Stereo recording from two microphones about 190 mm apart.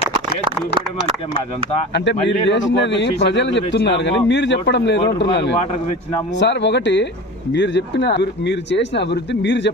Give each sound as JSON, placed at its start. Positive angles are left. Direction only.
{"t": 2.0, "sound": "speech", "side_deg": 70}